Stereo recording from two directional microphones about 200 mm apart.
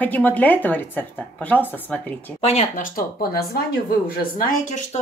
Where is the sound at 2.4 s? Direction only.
30° left (ahead or behind).